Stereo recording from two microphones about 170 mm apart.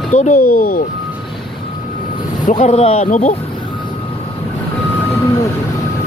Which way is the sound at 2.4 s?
40° left (ahead or behind).